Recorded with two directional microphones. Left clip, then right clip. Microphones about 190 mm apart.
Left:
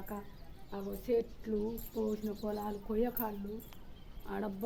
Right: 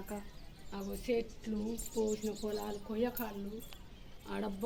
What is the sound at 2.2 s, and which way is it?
Speech, 25° left (ahead or behind).